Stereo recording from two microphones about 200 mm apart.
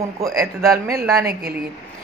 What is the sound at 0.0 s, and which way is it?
Speech, 15° right (ahead or behind).